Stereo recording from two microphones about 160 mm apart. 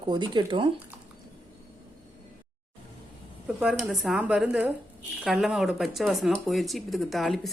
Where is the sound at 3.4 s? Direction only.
5° right (ahead or behind).